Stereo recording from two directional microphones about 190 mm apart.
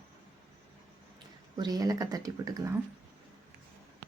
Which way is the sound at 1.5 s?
20° right (ahead or behind).